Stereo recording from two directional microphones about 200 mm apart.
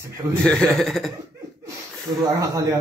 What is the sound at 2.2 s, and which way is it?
Speech, 15° right (ahead or behind).